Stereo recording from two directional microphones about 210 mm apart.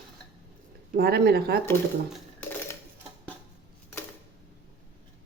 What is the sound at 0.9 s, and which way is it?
Speech, 45° right (ahead or behind).